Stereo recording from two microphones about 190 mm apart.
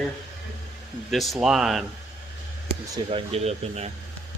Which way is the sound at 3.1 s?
30° right (ahead or behind).